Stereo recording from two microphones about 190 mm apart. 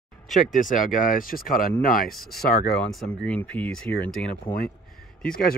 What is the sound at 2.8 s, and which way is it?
Speech, 5° left (ahead or behind).